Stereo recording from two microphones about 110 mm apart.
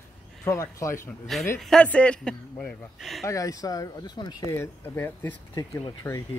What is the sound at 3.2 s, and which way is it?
Speech, 30° left (ahead or behind).